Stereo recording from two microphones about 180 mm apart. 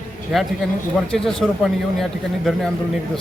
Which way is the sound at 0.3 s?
5° right (ahead or behind).